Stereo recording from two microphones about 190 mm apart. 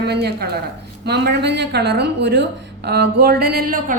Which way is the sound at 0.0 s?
60° right (ahead or behind).